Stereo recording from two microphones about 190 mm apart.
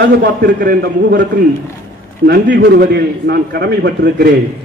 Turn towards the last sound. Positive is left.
turn(degrees=-60)  # may be behind; listen again after turning